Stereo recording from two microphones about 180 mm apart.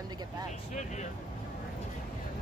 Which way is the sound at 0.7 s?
40° left (ahead or behind).